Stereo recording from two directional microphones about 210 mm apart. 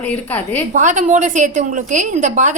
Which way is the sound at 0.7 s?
35° right (ahead or behind).